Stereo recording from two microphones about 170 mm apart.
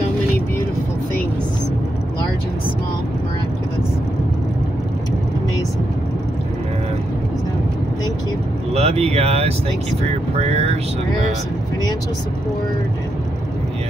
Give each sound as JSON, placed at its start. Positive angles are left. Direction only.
{"t": 8.7, "sound": "speech", "side_deg": -35}